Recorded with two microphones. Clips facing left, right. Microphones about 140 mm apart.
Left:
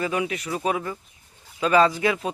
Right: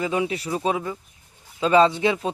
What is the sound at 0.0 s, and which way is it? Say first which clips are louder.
Speech: right 2 dB; 25° right (ahead or behind).